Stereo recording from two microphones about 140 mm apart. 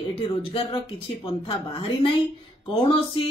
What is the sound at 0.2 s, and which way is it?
Speech, 40° left (ahead or behind).